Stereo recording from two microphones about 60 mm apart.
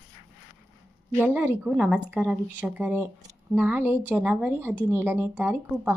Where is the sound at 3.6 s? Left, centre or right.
Right.